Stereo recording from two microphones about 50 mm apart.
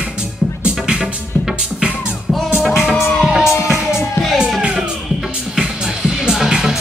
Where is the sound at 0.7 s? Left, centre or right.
Centre.